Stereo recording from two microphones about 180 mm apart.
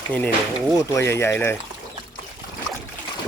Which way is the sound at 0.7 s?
15° left (ahead or behind).